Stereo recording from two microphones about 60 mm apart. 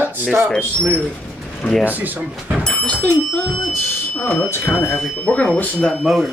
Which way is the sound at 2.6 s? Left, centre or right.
Centre.